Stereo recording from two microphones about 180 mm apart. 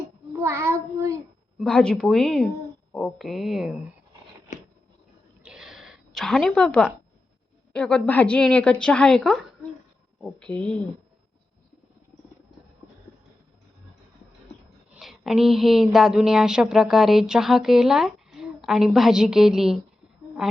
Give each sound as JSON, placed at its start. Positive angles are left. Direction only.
{"t": 0.3, "sound": "child singing", "side_deg": -15}
{"t": 1.5, "sound": "a woman's voice", "side_deg": 5}
{"t": 4.5, "sound": "a sound", "side_deg": 45}
{"t": 5.4, "sound": "a sound", "side_deg": -5}
{"t": 7.7, "sound": "a woman's voice", "side_deg": 5}
{"t": 14.9, "sound": "a woman's voice", "side_deg": 0}